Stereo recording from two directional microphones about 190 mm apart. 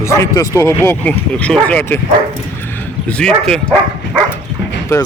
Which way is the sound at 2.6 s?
10° left (ahead or behind).